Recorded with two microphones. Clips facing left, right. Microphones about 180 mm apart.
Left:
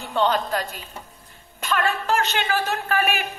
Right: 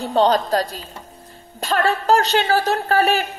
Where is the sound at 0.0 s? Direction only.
40° right (ahead or behind).